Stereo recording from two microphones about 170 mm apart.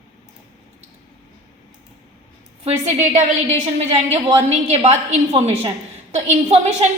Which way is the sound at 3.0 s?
40° right (ahead or behind).